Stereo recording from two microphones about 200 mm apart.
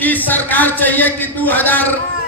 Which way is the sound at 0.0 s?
10° left (ahead or behind).